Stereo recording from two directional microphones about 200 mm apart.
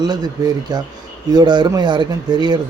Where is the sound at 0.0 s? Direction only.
20° right (ahead or behind).